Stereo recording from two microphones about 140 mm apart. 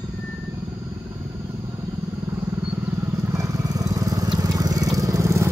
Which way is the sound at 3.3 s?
25° right (ahead or behind).